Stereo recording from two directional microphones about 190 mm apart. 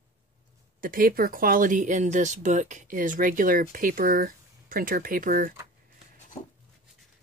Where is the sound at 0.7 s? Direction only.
50° right (ahead or behind).